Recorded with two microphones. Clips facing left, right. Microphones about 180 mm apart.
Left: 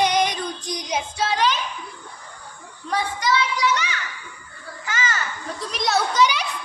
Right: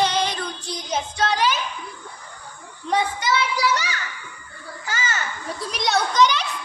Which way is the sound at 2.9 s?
25° right (ahead or behind).